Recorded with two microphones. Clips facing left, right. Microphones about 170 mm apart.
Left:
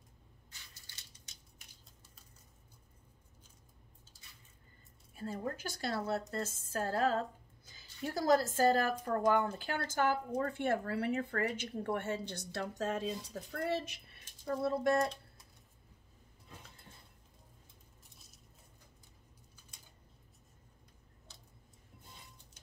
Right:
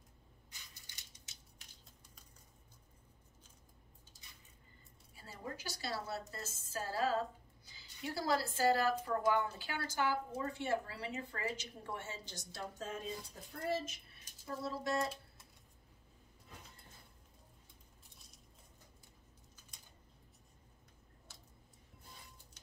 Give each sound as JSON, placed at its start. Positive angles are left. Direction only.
{"t": 5.1, "sound": "a woman's voice", "side_deg": 55}
{"t": 14.6, "sound": "a woman's voice", "side_deg": 55}